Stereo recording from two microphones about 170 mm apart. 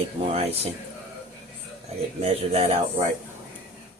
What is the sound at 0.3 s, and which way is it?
Speech, 35° right (ahead or behind).